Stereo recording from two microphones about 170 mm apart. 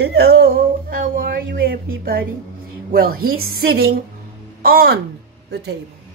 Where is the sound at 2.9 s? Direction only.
65° right (ahead or behind).